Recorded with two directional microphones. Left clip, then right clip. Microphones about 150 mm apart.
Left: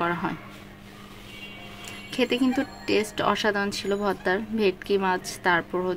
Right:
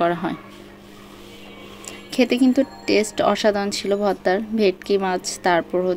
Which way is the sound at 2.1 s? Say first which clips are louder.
Right 6 dB; 20° right (ahead or behind).